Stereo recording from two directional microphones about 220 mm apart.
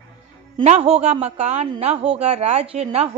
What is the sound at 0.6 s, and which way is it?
A woman's voice, 30° right (ahead or behind).